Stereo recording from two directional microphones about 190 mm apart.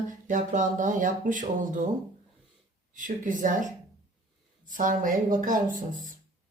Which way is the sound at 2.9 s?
45° right (ahead or behind).